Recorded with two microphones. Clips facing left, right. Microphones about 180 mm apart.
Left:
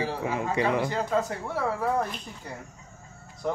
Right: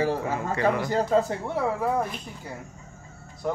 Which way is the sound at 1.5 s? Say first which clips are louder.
Right 1 dB; 10° right (ahead or behind).